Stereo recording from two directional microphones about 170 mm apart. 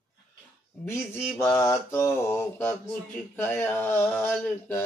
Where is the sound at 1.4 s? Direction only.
15° left (ahead or behind).